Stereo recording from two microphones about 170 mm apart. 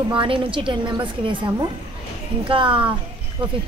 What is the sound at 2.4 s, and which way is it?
Speech, 30° right (ahead or behind).